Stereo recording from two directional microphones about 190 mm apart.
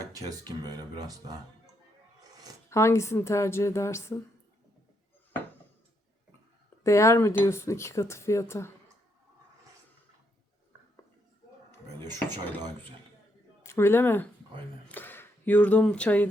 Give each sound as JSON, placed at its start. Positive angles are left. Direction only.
{"t": 0.1, "sound": "speech", "side_deg": -20}
{"t": 2.6, "sound": "speech", "side_deg": 15}
{"t": 6.8, "sound": "speech", "side_deg": 15}
{"t": 12.1, "sound": "speech", "side_deg": -20}
{"t": 13.7, "sound": "speech", "side_deg": 15}